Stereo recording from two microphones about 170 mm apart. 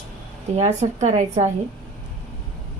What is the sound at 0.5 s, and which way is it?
Speech, 40° right (ahead or behind).